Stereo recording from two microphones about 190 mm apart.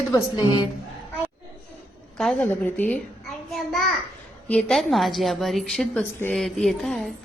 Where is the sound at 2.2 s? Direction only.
5° left (ahead or behind).